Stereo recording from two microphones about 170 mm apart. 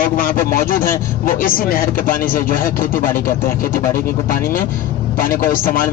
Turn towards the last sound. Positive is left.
turn(degrees=55)  # may be behind; listen again after turning